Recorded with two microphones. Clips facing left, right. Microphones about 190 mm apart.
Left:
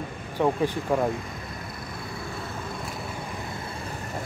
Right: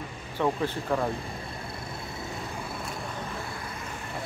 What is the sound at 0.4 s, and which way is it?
Speech, 15° left (ahead or behind).